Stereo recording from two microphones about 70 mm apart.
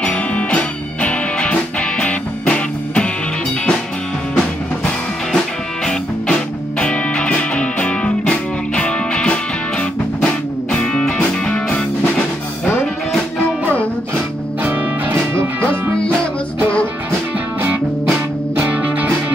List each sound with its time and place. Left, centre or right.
0.0 s music: centre
6.8 s music: centre
14.6 s music: right
15.3 s music: right
18.6 s music: right